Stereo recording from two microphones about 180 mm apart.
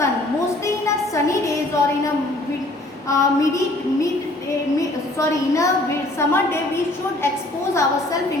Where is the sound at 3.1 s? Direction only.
15° left (ahead or behind).